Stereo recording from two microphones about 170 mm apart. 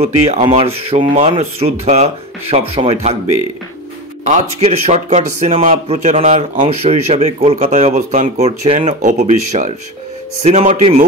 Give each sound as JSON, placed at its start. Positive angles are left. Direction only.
{"t": 0.0, "sound": "speech", "side_deg": -40}
{"t": 4.2, "sound": "speech", "side_deg": -40}